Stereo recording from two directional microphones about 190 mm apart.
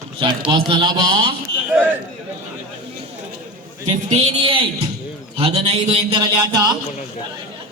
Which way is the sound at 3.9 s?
30° right (ahead or behind).